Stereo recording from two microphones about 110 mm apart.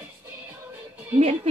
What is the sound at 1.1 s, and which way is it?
Speech, 75° right (ahead or behind).